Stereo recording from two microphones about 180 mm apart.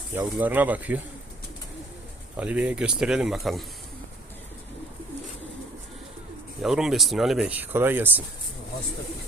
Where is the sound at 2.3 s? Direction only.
10° right (ahead or behind).